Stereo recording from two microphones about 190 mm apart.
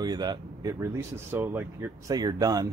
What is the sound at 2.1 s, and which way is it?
Speech, 20° right (ahead or behind).